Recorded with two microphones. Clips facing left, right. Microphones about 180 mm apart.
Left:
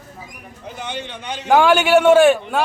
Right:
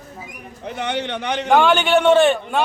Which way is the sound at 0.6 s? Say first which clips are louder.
Right 5 dB; 65° right (ahead or behind).